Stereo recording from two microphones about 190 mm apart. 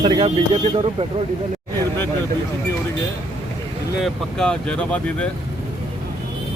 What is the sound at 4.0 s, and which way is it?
Speech, 5° left (ahead or behind).